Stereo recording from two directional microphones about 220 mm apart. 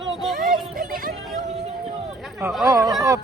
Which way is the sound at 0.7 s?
40° right (ahead or behind).